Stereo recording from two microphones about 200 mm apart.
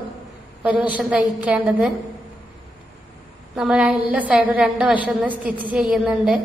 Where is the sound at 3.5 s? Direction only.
5° right (ahead or behind).